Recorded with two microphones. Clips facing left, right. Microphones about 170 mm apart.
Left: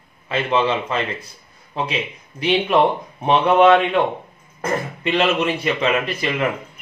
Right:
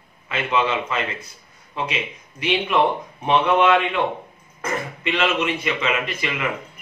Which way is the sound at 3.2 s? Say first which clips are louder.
Left 4 dB; 35° left (ahead or behind).